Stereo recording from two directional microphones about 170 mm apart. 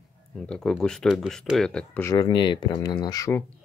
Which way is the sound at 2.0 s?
25° left (ahead or behind).